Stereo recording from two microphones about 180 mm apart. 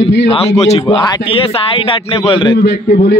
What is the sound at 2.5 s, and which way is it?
Speech, 75° left (ahead or behind).